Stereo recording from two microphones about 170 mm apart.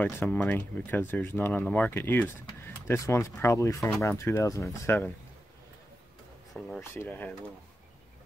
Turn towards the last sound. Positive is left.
turn(degrees=10)  # may be behind; listen again after turning